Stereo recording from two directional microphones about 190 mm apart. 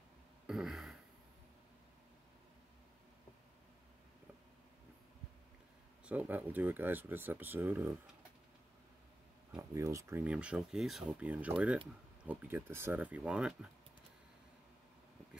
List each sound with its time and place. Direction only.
0.5 s a sound: centre (ahead or behind)
6.0 s speech: 10° right (ahead or behind)
9.6 s speech: 15° right (ahead or behind)